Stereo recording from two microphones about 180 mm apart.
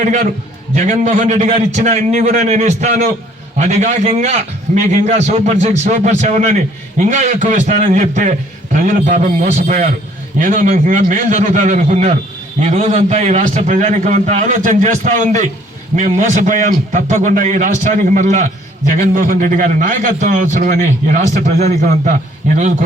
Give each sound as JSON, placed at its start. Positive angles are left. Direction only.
{"t": 0.0, "sound": "a man's voice", "side_deg": -45}